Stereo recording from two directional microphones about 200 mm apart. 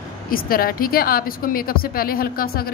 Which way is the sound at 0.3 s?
45° left (ahead or behind).